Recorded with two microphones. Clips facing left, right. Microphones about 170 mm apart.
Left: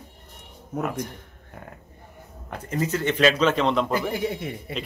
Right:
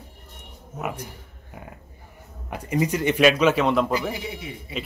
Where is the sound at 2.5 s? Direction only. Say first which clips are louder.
Right 3 dB; 10° right (ahead or behind).